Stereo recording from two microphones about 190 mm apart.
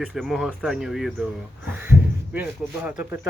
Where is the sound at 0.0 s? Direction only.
Centre (ahead or behind).